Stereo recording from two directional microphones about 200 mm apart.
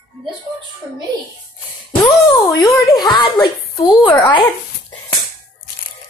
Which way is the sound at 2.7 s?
20° left (ahead or behind).